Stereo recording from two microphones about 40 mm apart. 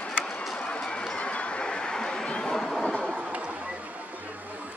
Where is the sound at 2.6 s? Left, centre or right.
Centre.